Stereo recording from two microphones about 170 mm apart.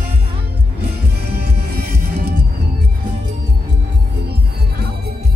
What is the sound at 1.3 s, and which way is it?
Music, 70° right (ahead or behind).